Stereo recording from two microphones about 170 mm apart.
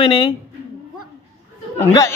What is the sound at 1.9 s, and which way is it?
Speech, 20° left (ahead or behind).